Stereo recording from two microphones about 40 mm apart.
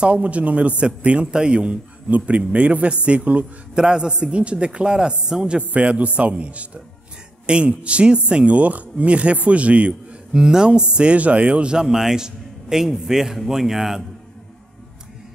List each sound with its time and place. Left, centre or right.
0.0 s speech: right
1.3 s a man's voice: right
2.0 s speech: right
3.7 s a man's voice: centre
5.6 s speech: right
7.4 s speech: right
10.3 s a man's voice: centre
11.8 s a man's voice: centre